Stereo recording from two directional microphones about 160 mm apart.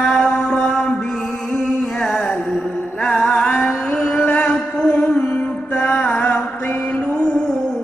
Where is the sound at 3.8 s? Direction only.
5° left (ahead or behind).